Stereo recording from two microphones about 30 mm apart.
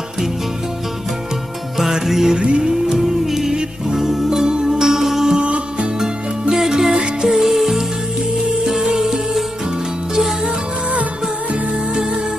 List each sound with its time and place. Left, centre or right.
1.8 s music: centre
2.3 s music: right
2.9 s music: centre
5.4 s music: right
6.7 s music: right
7.2 s music: centre